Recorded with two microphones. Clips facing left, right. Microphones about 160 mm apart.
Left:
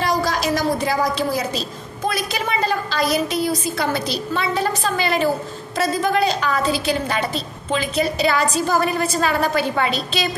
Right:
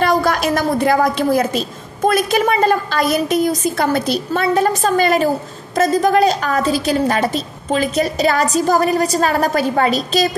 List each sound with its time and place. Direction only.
0.0 s a woman's voice: 55° right (ahead or behind)